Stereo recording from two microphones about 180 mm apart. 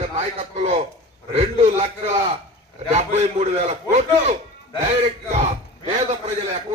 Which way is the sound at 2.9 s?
40° right (ahead or behind).